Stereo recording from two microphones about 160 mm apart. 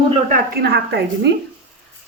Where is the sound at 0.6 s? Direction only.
90° right.